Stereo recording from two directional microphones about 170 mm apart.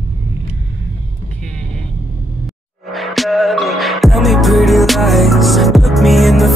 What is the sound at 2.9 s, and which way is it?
Music, centre (ahead or behind).